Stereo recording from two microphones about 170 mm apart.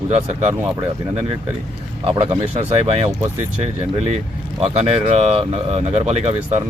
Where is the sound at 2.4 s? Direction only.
40° right (ahead or behind).